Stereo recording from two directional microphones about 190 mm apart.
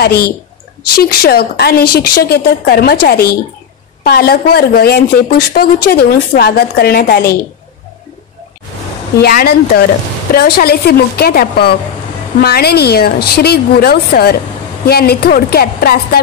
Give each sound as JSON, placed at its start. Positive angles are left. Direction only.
{"t": 0.0, "sound": "a woman's voice", "side_deg": 55}
{"t": 9.2, "sound": "a woman's voice", "side_deg": 55}